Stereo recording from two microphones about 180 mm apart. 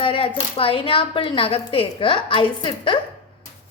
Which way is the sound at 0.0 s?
30° left (ahead or behind).